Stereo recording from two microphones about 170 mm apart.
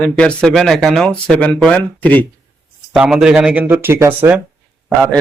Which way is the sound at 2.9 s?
5° right (ahead or behind).